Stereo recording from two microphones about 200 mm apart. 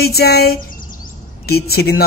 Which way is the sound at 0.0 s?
50° left (ahead or behind).